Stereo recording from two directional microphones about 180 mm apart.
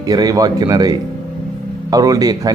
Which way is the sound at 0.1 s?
20° right (ahead or behind).